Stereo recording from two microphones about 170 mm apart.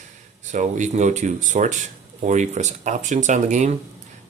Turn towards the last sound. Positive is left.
turn(degrees=-45)  # may be behind; listen again after turning